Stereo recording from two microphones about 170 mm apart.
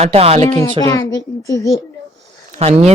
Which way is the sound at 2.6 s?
40° right (ahead or behind).